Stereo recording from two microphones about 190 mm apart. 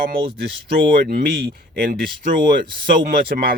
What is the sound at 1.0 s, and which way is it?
Speech, 55° right (ahead or behind).